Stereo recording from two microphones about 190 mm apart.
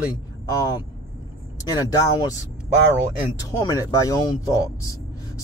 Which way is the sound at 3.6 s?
20° left (ahead or behind).